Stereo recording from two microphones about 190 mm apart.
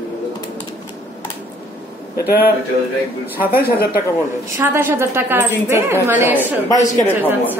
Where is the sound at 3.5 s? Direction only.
50° left (ahead or behind).